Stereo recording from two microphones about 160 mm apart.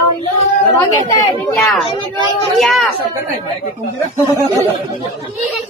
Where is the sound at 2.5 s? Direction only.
Centre (ahead or behind).